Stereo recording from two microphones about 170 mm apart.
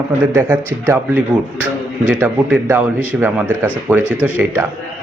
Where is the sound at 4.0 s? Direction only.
15° left (ahead or behind).